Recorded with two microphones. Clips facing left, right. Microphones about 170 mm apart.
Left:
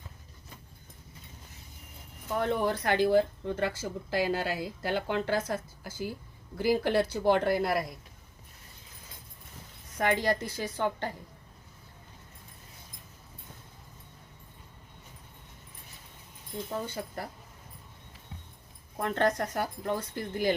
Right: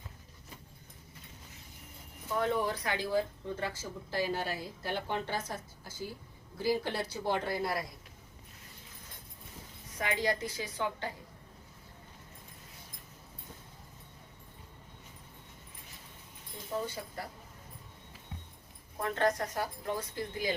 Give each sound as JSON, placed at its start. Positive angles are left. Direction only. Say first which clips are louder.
{"t": 2.4, "sound": "speech", "louder": "left 3 dB", "side_deg": 60}
{"t": 10.0, "sound": "a woman's voice", "louder": "left 5 dB", "side_deg": 60}
{"t": 19.0, "sound": "speech", "louder": "left 3 dB", "side_deg": 60}